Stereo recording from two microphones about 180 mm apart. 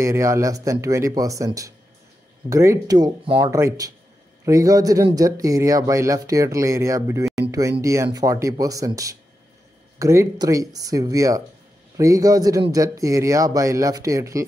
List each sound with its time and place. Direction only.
0.0 s speech: 15° right (ahead or behind)